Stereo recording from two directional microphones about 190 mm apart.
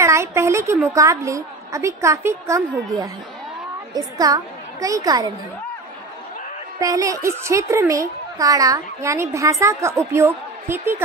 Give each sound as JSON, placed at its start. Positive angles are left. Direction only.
{"t": 0.0, "sound": "a child's voice", "side_deg": -15}
{"t": 3.9, "sound": "a woman's voice", "side_deg": -20}
{"t": 6.8, "sound": "a child's voice", "side_deg": -15}